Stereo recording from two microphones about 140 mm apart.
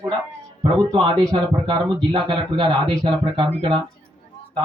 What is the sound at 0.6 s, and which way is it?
Speech, 35° right (ahead or behind).